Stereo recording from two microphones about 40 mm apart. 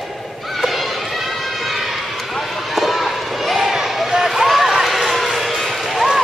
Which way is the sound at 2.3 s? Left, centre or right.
Centre.